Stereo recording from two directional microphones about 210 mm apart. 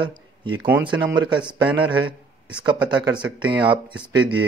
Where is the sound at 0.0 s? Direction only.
20° right (ahead or behind).